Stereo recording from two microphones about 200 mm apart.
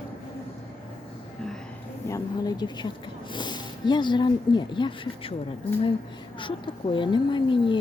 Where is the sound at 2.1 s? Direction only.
20° left (ahead or behind).